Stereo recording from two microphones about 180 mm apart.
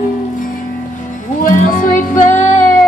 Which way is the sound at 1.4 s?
45° left (ahead or behind).